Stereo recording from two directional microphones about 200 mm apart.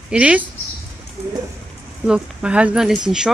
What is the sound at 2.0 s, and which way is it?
Speech, 5° right (ahead or behind).